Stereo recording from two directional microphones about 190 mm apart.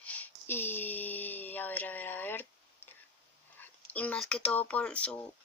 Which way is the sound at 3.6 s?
10° left (ahead or behind).